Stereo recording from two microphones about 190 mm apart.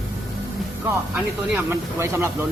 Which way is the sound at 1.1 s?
10° right (ahead or behind).